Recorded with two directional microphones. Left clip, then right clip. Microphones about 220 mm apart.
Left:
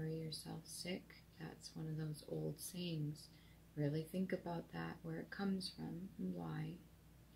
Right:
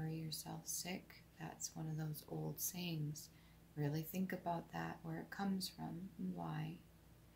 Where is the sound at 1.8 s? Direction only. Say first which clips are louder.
Even; 10° right (ahead or behind).